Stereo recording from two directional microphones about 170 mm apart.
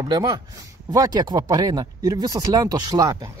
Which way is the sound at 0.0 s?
25° right (ahead or behind).